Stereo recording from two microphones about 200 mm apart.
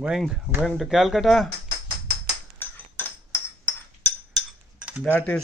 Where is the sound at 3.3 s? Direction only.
10° left (ahead or behind).